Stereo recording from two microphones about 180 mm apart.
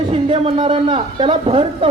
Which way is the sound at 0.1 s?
30° right (ahead or behind).